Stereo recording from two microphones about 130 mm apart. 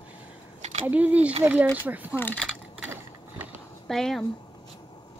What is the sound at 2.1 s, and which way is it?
Speech, 15° left (ahead or behind).